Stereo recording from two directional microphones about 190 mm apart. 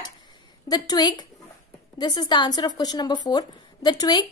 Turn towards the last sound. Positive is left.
turn(degrees=20)  # may be behind; listen again after turning